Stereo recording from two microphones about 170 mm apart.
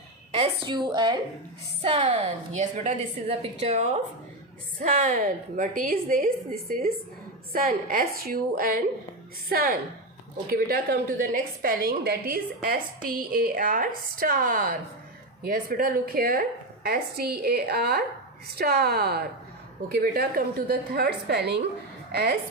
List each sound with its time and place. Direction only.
0.3 s a woman's voice: 30° right (ahead or behind); by 22.4 s 70° right (ahead or behind)